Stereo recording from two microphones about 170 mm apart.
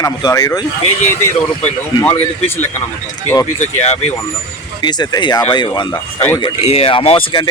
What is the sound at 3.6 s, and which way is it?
Speech, 40° left (ahead or behind).